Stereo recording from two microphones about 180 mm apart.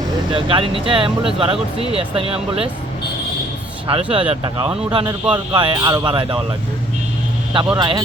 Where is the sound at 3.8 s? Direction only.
30° right (ahead or behind).